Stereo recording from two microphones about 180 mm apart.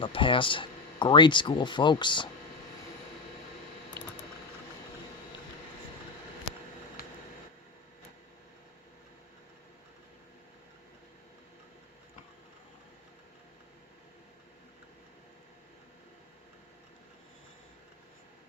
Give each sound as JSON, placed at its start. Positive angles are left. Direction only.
{"t": 0.0, "sound": "speech", "side_deg": 30}